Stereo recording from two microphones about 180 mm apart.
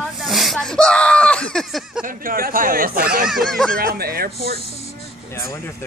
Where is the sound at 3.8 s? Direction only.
55° right (ahead or behind).